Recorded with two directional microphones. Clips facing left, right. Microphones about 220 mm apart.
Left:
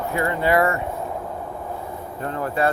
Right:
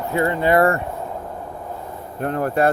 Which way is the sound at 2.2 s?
60° right (ahead or behind).